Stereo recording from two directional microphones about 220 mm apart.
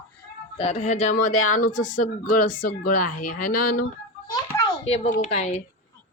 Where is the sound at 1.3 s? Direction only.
75° left (ahead or behind).